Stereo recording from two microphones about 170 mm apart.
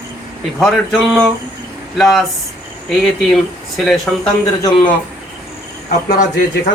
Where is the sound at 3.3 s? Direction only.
Centre (ahead or behind).